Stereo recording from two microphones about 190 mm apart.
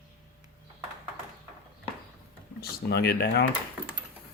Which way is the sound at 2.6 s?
60° left (ahead or behind).